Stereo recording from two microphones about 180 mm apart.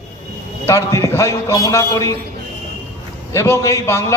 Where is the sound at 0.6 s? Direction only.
15° left (ahead or behind).